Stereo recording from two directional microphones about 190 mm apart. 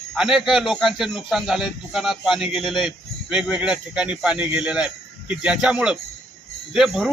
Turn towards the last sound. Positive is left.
turn(degrees=0)  # may be behind; listen again after turning